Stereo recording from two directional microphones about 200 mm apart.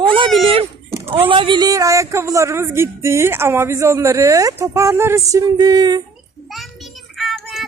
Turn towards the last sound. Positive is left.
turn(degrees=0)  # may be behind; listen again after turning